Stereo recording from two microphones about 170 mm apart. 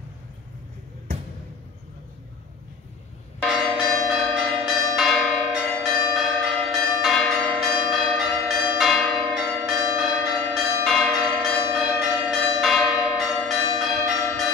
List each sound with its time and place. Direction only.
3.4 s church bell: centre (ahead or behind)
4.1 s change ringing: centre (ahead or behind)